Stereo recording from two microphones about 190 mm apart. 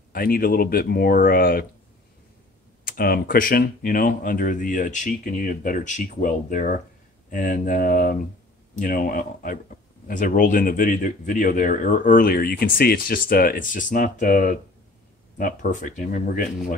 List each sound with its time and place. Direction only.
0.1 s speech: 50° left (ahead or behind)
2.8 s speech: 50° left (ahead or behind)